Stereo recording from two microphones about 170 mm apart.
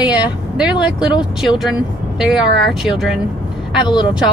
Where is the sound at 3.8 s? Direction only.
25° left (ahead or behind).